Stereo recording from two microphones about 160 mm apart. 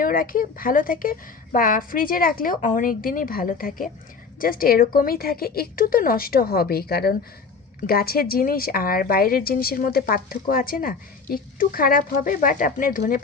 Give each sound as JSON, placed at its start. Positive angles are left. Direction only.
{"t": 0.0, "sound": "a woman's voice", "side_deg": 60}